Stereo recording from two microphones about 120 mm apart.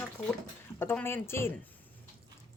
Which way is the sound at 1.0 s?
20° left (ahead or behind).